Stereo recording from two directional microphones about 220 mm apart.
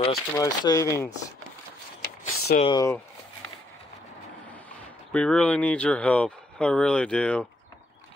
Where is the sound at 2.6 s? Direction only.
15° left (ahead or behind).